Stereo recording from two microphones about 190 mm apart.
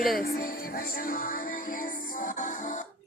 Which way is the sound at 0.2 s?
50° left (ahead or behind).